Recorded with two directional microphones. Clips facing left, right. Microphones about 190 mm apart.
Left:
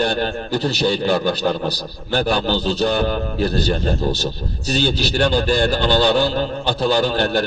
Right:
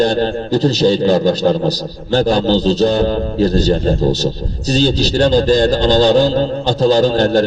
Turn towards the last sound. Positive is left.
turn(degrees=-40)  # may be behind; listen again after turning